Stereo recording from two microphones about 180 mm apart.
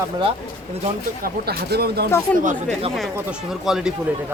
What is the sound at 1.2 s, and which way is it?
Speech, 60° right (ahead or behind).